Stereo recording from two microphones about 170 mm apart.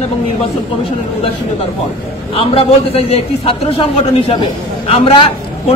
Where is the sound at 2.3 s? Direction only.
35° left (ahead or behind).